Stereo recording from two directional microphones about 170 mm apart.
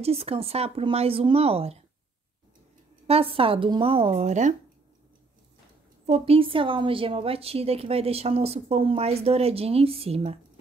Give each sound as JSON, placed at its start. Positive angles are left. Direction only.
{"t": 0.0, "sound": "a woman's voice", "side_deg": -35}
{"t": 3.1, "sound": "a woman's voice", "side_deg": -35}
{"t": 6.0, "sound": "a woman's voice", "side_deg": -35}